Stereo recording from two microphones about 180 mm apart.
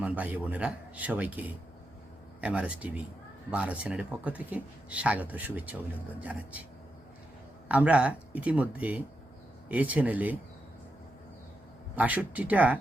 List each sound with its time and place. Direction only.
0.0 s speech: 10° right (ahead or behind)
7.7 s speech: 5° right (ahead or behind)
11.9 s speech: 10° right (ahead or behind)